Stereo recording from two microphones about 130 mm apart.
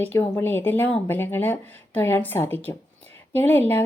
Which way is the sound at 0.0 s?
15° left (ahead or behind).